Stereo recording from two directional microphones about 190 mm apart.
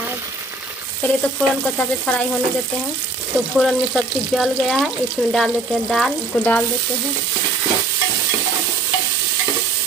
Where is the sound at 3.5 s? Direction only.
Centre (ahead or behind).